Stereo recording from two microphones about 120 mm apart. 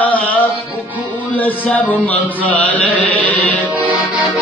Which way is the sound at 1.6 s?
15° left (ahead or behind).